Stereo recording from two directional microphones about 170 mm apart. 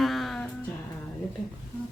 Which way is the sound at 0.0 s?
Centre (ahead or behind).